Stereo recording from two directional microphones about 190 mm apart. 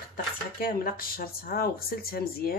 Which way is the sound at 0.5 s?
50° left (ahead or behind).